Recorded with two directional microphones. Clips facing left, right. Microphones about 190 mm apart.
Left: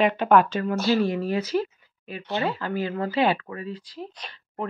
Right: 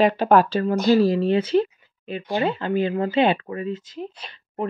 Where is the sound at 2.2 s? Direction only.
15° right (ahead or behind).